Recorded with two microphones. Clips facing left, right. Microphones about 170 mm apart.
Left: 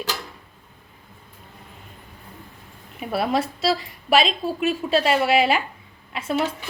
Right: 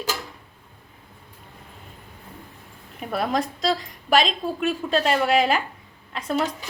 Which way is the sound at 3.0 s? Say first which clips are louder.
Left 2 dB; 5° left (ahead or behind).